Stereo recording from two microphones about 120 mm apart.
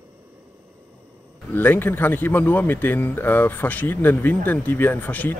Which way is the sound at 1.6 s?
15° left (ahead or behind).